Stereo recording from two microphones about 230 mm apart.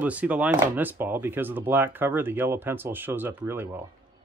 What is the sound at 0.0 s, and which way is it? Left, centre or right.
Speech, centre.